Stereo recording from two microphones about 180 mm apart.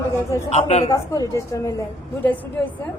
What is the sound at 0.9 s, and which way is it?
Speech, 15° left (ahead or behind).